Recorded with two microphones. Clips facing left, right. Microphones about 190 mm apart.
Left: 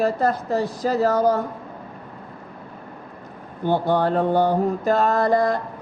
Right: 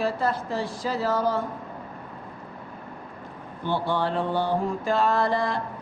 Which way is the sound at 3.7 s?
45° left (ahead or behind).